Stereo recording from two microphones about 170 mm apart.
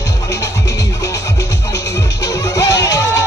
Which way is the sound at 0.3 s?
20° left (ahead or behind).